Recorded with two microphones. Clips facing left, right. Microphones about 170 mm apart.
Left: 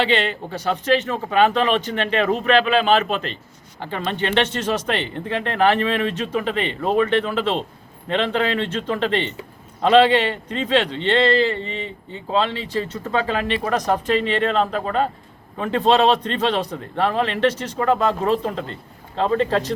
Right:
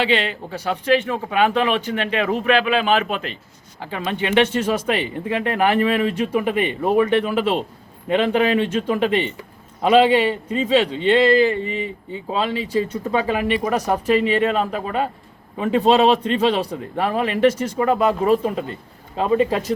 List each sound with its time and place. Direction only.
0.0 s speech: 10° right (ahead or behind)